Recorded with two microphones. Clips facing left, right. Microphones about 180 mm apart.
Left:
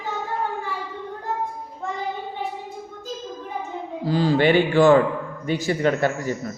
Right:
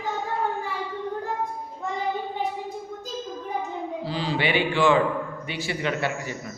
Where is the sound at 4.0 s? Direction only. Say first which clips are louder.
Left 9 dB; 45° left (ahead or behind).